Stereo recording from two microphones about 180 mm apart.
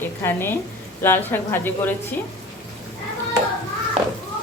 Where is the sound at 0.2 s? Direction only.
10° left (ahead or behind).